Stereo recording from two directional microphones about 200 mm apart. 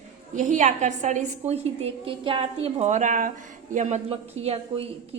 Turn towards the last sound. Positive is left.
turn(degrees=-30)  # may be behind; listen again after turning